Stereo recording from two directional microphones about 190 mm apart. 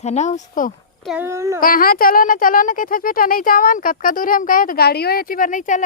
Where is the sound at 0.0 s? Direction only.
35° left (ahead or behind).